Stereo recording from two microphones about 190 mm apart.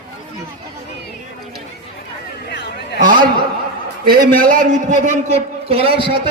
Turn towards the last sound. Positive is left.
turn(degrees=-30)  # may be behind; listen again after turning